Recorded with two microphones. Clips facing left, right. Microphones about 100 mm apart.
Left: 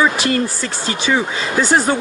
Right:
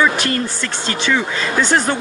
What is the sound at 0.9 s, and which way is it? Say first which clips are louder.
Speech: left 1 dB; 25° left (ahead or behind).